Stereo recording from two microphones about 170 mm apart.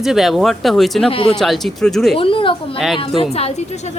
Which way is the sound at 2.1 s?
30° left (ahead or behind).